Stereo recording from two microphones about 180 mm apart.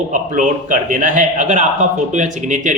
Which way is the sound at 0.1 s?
45° right (ahead or behind).